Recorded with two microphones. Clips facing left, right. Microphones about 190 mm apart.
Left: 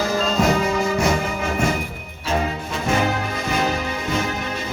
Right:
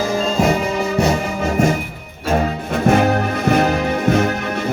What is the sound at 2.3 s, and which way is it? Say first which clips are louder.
Music: right 5 dB; 55° right (ahead or behind).